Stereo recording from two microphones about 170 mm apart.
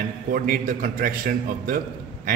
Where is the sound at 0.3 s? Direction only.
55° right (ahead or behind).